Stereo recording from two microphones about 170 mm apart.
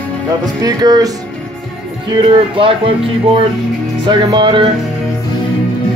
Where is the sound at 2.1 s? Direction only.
25° right (ahead or behind).